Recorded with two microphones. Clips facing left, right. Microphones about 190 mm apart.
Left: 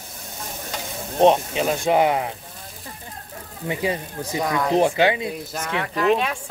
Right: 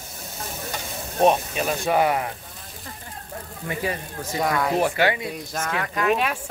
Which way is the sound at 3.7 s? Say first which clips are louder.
Left 3 dB; 20° left (ahead or behind).